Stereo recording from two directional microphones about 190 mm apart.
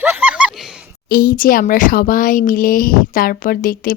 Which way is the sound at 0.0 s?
10° right (ahead or behind).